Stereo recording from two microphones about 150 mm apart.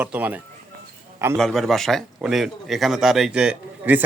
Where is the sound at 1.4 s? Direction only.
5° left (ahead or behind).